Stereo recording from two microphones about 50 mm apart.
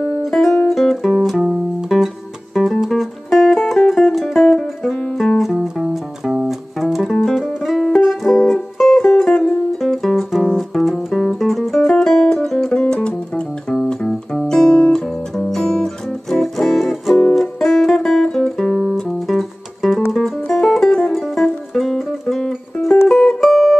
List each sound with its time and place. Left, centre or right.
0.2 s music: centre
11.1 s music: centre
14.0 s music: centre
20.3 s music: centre
21.2 s music: centre